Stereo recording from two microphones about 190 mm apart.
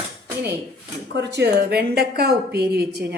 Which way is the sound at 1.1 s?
65° right (ahead or behind).